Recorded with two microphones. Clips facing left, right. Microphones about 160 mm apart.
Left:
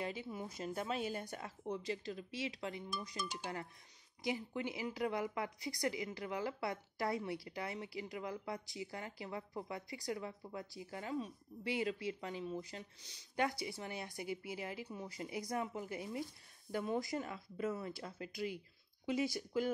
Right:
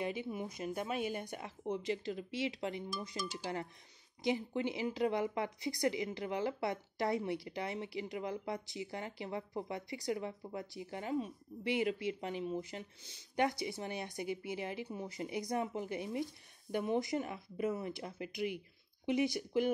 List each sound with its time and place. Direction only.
0.0 s speech: 20° right (ahead or behind)